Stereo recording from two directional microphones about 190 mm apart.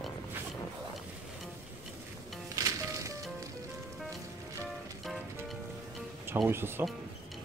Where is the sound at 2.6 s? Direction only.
15° right (ahead or behind).